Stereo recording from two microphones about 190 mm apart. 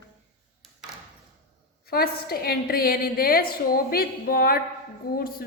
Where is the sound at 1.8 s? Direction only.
55° left (ahead or behind).